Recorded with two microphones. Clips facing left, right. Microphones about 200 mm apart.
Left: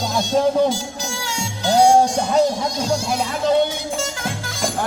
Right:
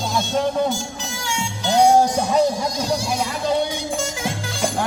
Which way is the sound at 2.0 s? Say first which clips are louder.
Left 1 dB; 5° right (ahead or behind).